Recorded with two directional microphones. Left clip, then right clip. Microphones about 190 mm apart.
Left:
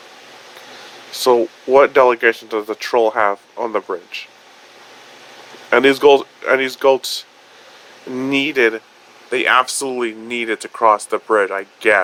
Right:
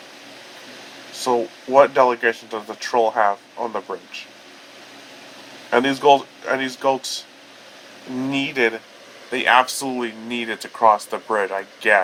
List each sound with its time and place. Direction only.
1.2 s speech: 35° left (ahead or behind)
5.7 s speech: 35° left (ahead or behind)
8.3 s speech: 30° left (ahead or behind)